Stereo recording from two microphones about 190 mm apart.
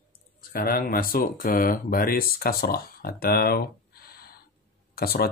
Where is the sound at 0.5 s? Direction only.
50° left (ahead or behind).